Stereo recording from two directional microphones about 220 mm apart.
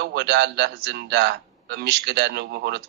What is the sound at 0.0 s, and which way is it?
A man's voice, 50° right (ahead or behind).